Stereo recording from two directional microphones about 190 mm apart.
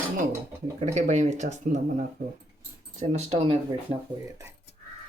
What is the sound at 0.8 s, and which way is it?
Speech, 40° right (ahead or behind).